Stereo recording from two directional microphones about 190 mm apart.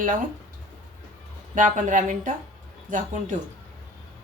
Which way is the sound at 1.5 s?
40° right (ahead or behind).